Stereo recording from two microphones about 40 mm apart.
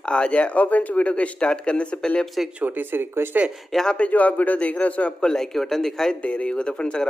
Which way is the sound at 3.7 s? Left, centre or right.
Centre.